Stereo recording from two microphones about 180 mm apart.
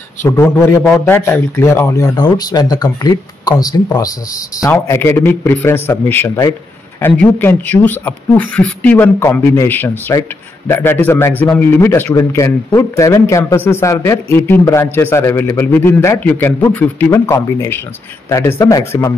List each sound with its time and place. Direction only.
0.2 s a man's voice: 15° left (ahead or behind)